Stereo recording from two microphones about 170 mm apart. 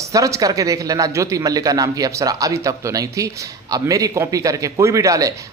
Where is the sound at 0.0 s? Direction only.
20° right (ahead or behind).